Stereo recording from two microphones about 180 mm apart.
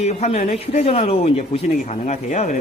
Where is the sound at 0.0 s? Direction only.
40° left (ahead or behind).